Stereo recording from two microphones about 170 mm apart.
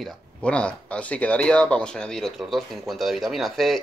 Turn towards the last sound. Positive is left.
turn(degrees=0)  # may be behind; listen again after turning